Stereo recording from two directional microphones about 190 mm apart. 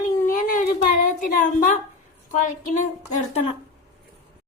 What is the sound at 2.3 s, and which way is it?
A woman's voice, 40° left (ahead or behind).